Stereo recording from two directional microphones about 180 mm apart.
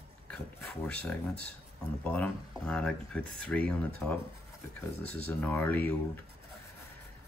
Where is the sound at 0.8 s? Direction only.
5° left (ahead or behind).